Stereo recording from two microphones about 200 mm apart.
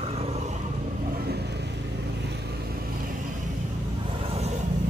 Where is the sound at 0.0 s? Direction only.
30° right (ahead or behind).